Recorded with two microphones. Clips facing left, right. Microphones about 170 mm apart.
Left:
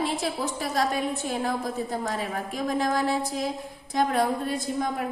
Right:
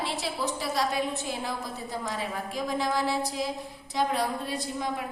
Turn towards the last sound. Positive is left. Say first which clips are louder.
# left 4 dB
turn(degrees=50)  # may be behind; listen again after turning